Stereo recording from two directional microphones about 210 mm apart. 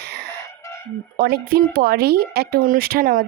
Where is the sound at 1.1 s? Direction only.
45° right (ahead or behind).